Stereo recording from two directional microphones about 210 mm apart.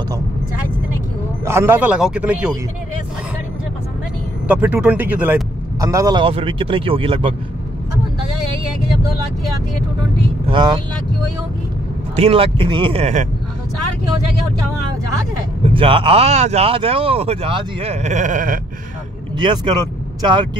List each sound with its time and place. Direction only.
1.4 s speech: 10° right (ahead or behind)
4.5 s speech: 10° right (ahead or behind); by 7.3 s 25° right (ahead or behind)
10.1 s speech: 25° right (ahead or behind)
12.2 s speech: 25° right (ahead or behind)
15.6 s speech: 25° right (ahead or behind)
19.3 s speech: 20° right (ahead or behind)